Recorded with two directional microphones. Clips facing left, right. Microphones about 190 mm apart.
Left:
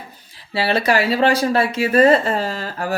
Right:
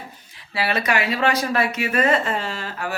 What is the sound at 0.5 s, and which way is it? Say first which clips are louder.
Speech: left 5 dB; 30° left (ahead or behind).